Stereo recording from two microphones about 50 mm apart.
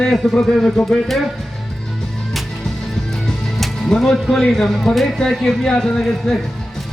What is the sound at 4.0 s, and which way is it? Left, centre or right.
Speech, centre.